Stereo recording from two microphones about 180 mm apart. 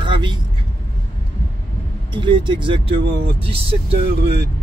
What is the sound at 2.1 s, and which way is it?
Speech, 25° right (ahead or behind).